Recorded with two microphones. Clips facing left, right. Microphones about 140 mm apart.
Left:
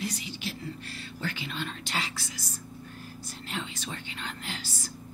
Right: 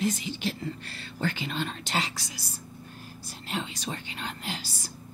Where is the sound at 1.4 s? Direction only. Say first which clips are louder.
Right 3 dB; 25° right (ahead or behind).